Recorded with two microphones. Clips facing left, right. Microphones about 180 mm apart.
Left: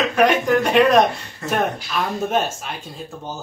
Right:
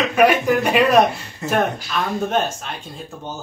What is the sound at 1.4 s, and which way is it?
Speech, 20° right (ahead or behind).